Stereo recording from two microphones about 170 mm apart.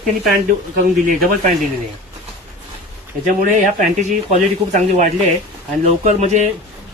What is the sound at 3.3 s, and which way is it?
Speech, 50° right (ahead or behind).